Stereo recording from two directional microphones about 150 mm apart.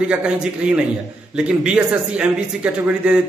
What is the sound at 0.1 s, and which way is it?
A man's voice, 5° right (ahead or behind).